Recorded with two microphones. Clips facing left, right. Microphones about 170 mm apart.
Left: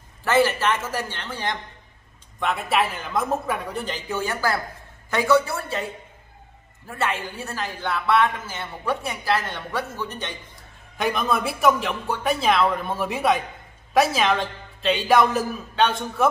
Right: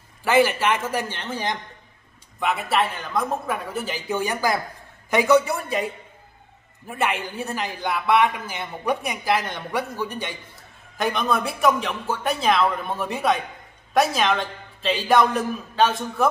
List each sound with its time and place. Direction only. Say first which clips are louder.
0.2 s speech: right 1 dB; 15° right (ahead or behind)
2.4 s a man's voice: even; centre (ahead or behind); by 5.9 s 15° right (ahead or behind)
6.9 s speech: right 1 dB; 15° right (ahead or behind)
11.0 s a man's voice: even; centre (ahead or behind)